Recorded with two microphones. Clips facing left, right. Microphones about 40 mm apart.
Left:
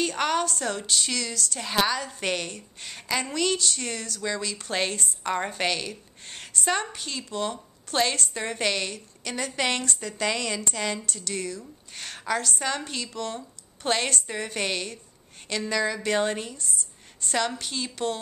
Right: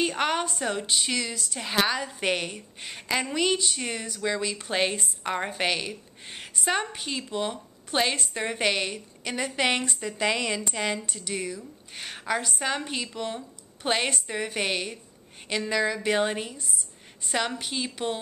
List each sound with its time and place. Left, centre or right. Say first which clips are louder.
0.0 s a woman's voice: left 1 dB; centre